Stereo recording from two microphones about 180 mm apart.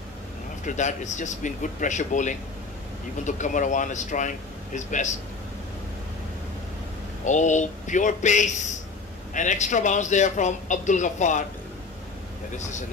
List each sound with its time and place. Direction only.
0.7 s a man's voice: 40° left (ahead or behind)
7.2 s a man's voice: 45° left (ahead or behind)